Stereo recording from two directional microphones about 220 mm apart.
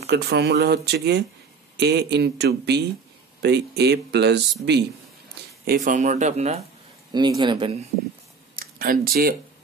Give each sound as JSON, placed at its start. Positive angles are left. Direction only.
{"t": 0.0, "sound": "speech", "side_deg": -50}
{"t": 5.7, "sound": "speech", "side_deg": -35}
{"t": 7.1, "sound": "speech", "side_deg": -20}
{"t": 8.5, "sound": "speech", "side_deg": -40}